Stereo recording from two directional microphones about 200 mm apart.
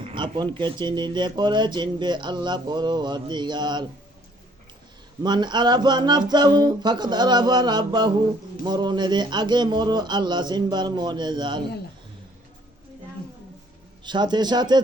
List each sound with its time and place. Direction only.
0.0 s speech: 25° right (ahead or behind)
5.2 s speech: 20° right (ahead or behind)
14.0 s speech: 20° right (ahead or behind)